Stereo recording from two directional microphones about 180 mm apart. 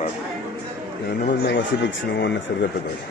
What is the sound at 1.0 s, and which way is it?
Speech, 70° left (ahead or behind).